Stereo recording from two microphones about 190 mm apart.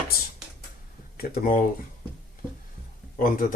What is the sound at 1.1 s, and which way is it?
Speech, 50° left (ahead or behind).